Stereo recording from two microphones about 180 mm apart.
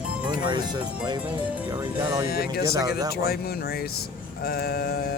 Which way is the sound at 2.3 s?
55° left (ahead or behind).